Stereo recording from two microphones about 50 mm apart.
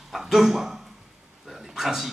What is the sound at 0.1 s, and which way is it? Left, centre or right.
A man's voice, centre.